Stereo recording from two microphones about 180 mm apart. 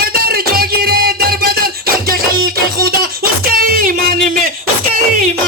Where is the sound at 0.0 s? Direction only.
55° right (ahead or behind).